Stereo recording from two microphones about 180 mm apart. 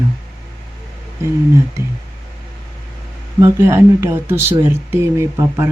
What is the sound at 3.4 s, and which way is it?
Speech, 15° right (ahead or behind).